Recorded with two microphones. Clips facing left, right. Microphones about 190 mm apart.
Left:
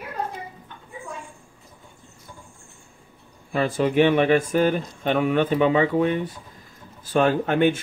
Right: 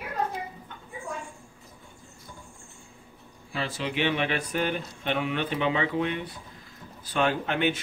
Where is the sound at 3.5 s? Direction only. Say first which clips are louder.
Left 11 dB; 50° left (ahead or behind).